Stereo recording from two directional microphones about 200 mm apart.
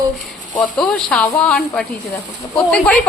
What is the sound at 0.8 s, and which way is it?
Speech, 5° left (ahead or behind).